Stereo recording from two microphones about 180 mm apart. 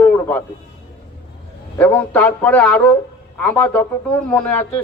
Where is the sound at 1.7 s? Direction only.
10° left (ahead or behind).